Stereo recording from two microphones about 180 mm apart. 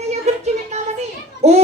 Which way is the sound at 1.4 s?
35° right (ahead or behind).